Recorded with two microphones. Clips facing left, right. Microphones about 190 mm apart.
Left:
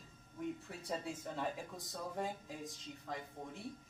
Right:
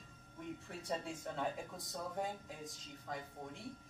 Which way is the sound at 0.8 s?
Centre (ahead or behind).